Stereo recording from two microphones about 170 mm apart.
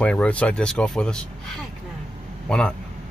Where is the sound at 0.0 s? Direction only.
5° left (ahead or behind).